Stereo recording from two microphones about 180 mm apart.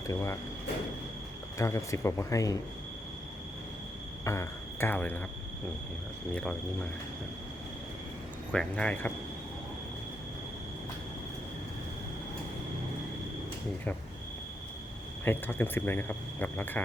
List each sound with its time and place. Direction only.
0.1 s speech: 15° left (ahead or behind)
1.5 s speech: 15° left (ahead or behind)
4.2 s speech: 15° left (ahead or behind)
6.3 s speech: 5° left (ahead or behind)
8.5 s speech: 5° left (ahead or behind)
15.2 s speech: 10° left (ahead or behind)